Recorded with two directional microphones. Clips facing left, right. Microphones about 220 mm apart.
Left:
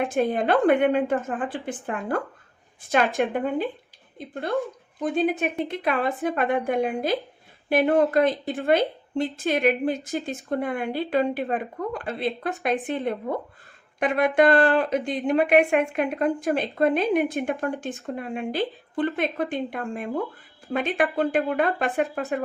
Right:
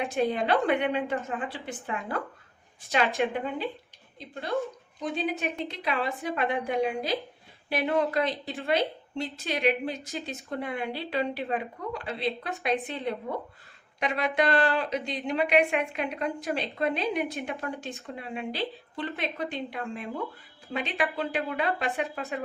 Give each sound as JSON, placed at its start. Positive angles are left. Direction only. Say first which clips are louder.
{"t": 0.1, "sound": "speech", "louder": "left 4 dB", "side_deg": 50}
{"t": 2.8, "sound": "speech", "louder": "left 4 dB", "side_deg": 50}